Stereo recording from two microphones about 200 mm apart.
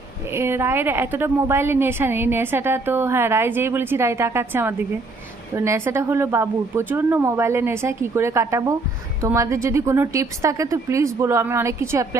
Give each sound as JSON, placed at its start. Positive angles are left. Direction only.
{"t": 0.3, "sound": "a woman's voice", "side_deg": -10}